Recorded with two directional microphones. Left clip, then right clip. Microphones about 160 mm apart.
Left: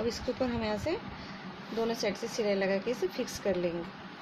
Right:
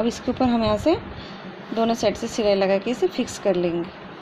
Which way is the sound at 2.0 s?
45° right (ahead or behind).